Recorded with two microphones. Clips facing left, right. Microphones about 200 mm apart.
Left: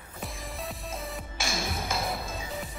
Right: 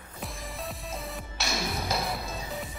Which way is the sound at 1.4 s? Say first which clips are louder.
Right 1 dB; 50° left (ahead or behind).